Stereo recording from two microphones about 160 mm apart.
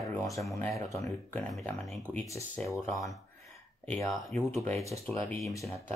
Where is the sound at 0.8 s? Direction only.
20° left (ahead or behind).